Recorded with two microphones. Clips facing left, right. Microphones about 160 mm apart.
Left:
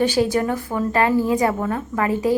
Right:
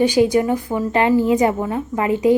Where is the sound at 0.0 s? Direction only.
15° right (ahead or behind).